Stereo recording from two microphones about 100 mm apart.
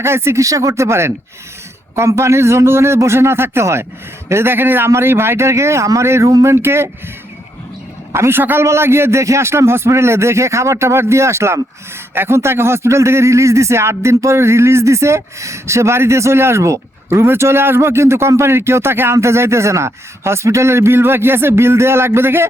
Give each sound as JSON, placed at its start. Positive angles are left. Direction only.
{"t": 0.0, "sound": "a man's voice", "side_deg": -25}
{"t": 8.1, "sound": "a man's voice", "side_deg": -25}